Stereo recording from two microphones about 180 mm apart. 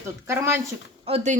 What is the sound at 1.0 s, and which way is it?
Speech, 35° right (ahead or behind).